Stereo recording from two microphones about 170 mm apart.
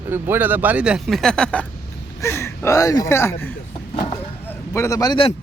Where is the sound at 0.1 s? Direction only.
10° right (ahead or behind); by 5.3 s 25° left (ahead or behind).